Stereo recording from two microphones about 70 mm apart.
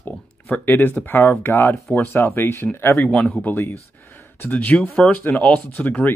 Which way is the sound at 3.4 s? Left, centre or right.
Left.